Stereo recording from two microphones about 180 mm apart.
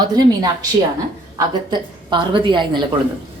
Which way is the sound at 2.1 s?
25° right (ahead or behind).